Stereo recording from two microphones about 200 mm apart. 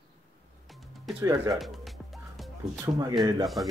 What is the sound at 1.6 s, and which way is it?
Speech, centre (ahead or behind).